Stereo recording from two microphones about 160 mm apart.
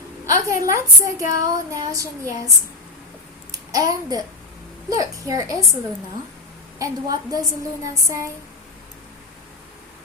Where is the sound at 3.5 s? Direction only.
20° right (ahead or behind).